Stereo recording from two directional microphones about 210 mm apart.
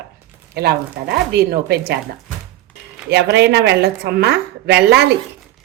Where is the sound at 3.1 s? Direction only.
55° right (ahead or behind).